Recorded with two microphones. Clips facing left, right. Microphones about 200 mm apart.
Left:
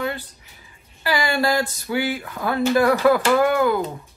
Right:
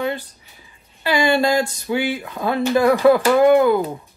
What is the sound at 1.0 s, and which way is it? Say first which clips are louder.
Speech: right 4 dB; 25° right (ahead or behind).